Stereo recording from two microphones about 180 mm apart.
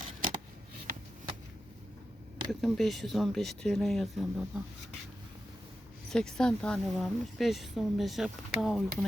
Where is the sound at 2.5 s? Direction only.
Centre (ahead or behind).